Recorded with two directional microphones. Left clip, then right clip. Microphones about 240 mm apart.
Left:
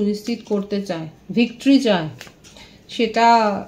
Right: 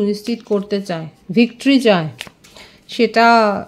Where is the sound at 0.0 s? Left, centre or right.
Right.